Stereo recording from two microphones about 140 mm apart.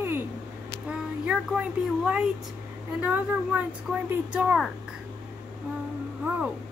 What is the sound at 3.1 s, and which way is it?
Speech, 10° right (ahead or behind).